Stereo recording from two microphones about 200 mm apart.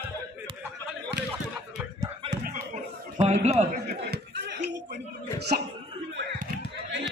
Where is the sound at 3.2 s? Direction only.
30° right (ahead or behind).